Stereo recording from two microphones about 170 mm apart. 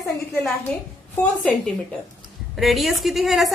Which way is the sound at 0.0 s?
15° left (ahead or behind).